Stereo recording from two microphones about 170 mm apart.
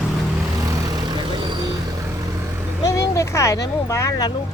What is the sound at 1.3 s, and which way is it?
Vehicle, 25° right (ahead or behind).